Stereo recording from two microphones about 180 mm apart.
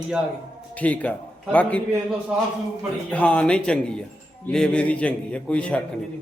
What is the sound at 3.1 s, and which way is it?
A man's voice, 5° left (ahead or behind).